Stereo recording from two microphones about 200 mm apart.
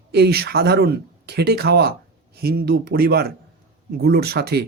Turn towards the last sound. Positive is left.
turn(degrees=-55)  # may be behind; listen again after turning